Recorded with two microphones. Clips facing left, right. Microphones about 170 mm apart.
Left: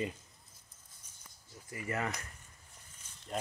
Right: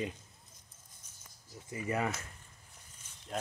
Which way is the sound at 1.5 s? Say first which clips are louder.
Right 3 dB; 20° right (ahead or behind).